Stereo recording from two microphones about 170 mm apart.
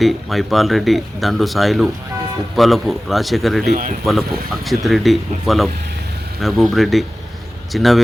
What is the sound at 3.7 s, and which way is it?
Speech, 50° right (ahead or behind).